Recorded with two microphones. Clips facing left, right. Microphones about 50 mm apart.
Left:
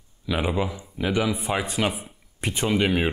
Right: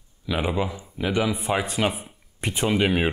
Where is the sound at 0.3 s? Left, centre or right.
Centre.